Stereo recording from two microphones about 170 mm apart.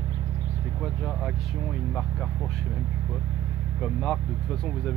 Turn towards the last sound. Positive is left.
turn(degrees=0)  # may be behind; listen again after turning